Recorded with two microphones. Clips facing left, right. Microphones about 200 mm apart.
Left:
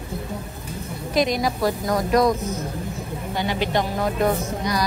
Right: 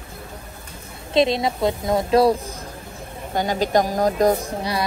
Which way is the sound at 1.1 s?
25° right (ahead or behind).